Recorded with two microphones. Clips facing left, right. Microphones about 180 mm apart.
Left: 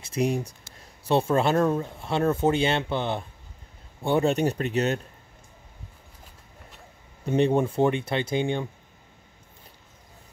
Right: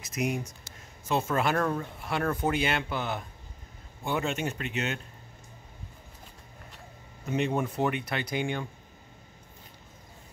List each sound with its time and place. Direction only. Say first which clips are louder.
0.0 s speech: left 5 dB; 30° left (ahead or behind)
7.2 s speech: left 7 dB; 30° left (ahead or behind)